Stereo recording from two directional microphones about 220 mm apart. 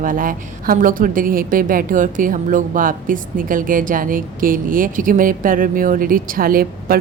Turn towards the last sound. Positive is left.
turn(degrees=-40)  # may be behind; listen again after turning